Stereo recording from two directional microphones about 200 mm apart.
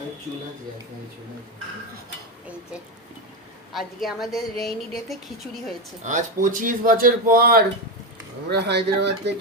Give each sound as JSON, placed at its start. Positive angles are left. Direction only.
{"t": 3.7, "sound": "a woman's voice", "side_deg": 0}
{"t": 6.0, "sound": "speech", "side_deg": -40}